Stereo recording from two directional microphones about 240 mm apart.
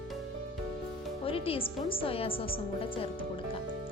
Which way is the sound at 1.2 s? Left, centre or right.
Left.